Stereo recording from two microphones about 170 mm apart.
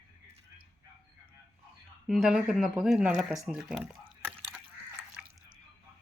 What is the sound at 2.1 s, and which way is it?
Speech, 5° right (ahead or behind).